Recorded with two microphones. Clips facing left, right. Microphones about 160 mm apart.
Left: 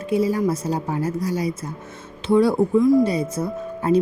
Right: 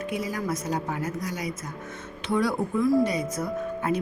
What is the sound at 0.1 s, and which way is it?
A woman's voice, 30° left (ahead or behind).